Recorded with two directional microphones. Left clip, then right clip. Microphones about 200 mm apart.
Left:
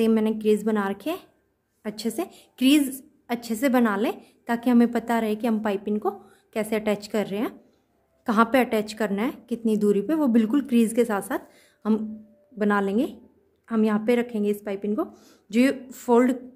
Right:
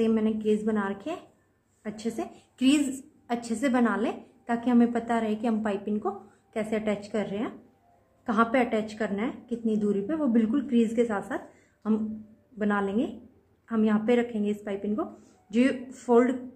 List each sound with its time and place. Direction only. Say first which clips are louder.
0.0 s a woman's voice: left 4 dB; 45° left (ahead or behind)